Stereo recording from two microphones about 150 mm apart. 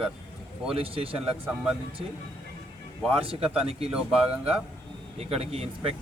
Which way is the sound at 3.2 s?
40° right (ahead or behind).